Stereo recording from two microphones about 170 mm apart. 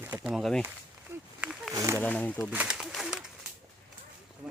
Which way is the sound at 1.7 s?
15° right (ahead or behind).